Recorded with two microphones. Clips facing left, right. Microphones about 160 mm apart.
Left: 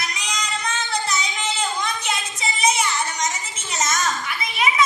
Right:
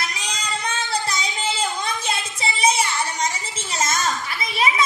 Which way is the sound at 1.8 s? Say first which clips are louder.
Even; 30° right (ahead or behind).